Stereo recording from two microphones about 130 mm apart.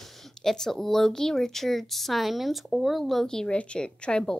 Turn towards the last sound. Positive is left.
turn(degrees=5)  # may be behind; listen again after turning